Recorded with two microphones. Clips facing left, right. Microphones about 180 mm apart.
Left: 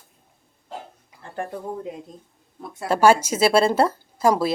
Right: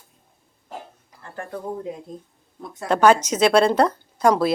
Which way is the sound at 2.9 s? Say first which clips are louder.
Even; 10° left (ahead or behind).